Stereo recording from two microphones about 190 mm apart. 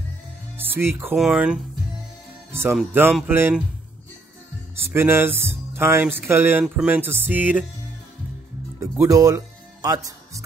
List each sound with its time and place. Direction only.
0.6 s speech: 10° right (ahead or behind)
2.7 s speech: 5° right (ahead or behind)
4.9 s speech: 10° right (ahead or behind)
8.7 s speech: 15° right (ahead or behind)